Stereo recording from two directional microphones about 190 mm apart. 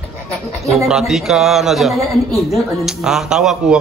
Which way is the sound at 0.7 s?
Centre (ahead or behind).